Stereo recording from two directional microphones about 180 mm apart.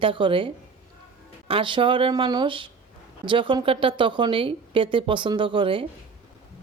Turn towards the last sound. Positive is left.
turn(degrees=-30)  # may be behind; listen again after turning